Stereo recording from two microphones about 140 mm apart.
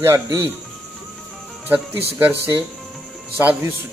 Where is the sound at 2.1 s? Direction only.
15° right (ahead or behind).